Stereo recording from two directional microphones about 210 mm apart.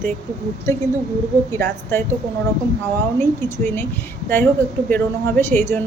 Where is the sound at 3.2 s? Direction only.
10° left (ahead or behind).